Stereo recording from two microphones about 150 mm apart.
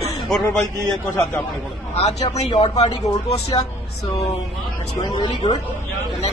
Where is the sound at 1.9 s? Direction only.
45° left (ahead or behind).